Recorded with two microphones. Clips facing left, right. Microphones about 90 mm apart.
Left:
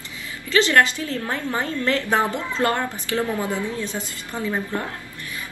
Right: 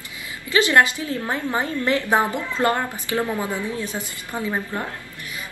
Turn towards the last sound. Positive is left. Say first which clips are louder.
# even
turn(degrees=-15)  # may be behind; listen again after turning